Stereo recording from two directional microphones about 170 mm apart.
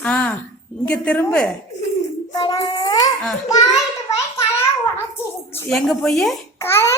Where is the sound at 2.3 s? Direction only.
20° left (ahead or behind).